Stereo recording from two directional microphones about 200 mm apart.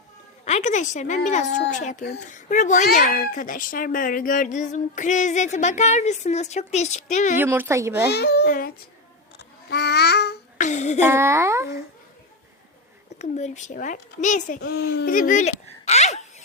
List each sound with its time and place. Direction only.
0.4 s a woman's voice: 35° left (ahead or behind)
7.3 s a child's voice: 10° right (ahead or behind)
8.1 s a child's voice: 55° left (ahead or behind)
9.4 s babbling: 55° left (ahead or behind)
10.6 s a sound: 35° left (ahead or behind)
11.0 s a child's voice: 10° right (ahead or behind)
13.1 s a child's voice: 35° left (ahead or behind)
14.7 s a child's voice: 55° left (ahead or behind); by 16.2 s 35° left (ahead or behind)